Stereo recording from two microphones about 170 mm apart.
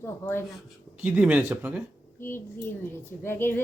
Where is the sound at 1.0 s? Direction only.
10° right (ahead or behind).